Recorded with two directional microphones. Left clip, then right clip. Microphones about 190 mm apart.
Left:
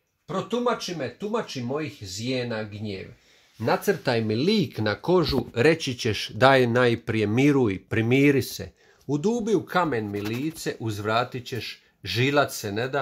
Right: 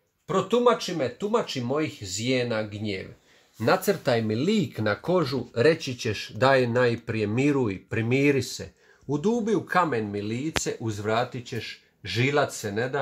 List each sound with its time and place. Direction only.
0.3 s speech: 5° right (ahead or behind)
1.6 s speech: 10° left (ahead or behind)
3.6 s speech: 35° left (ahead or behind)